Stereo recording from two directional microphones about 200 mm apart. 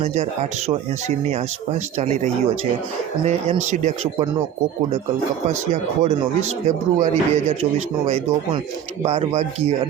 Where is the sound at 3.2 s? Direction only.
35° right (ahead or behind).